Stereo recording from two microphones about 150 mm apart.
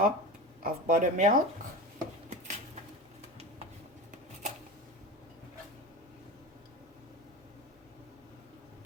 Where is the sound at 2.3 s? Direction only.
50° right (ahead or behind).